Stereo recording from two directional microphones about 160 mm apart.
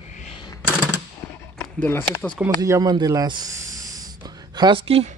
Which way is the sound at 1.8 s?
15° left (ahead or behind).